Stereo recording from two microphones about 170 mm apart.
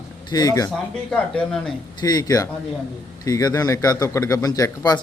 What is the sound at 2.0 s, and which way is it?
A man's voice, 20° left (ahead or behind).